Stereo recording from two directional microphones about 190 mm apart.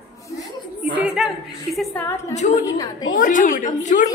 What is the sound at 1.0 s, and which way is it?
Speech, centre (ahead or behind).